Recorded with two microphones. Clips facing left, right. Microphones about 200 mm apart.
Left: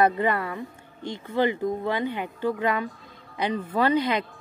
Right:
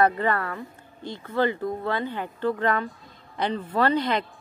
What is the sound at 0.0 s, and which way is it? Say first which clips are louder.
Speech: even; 15° left (ahead or behind).